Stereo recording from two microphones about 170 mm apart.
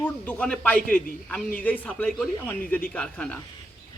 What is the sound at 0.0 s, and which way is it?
Speech, 10° left (ahead or behind).